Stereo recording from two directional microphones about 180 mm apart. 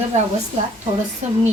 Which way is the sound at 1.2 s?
40° right (ahead or behind).